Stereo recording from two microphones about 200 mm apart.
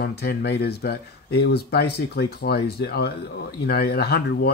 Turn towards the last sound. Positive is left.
turn(degrees=55)  # may be behind; listen again after turning